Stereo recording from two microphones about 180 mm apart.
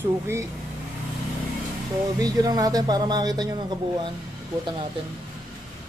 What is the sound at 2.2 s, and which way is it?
Speech, 20° right (ahead or behind).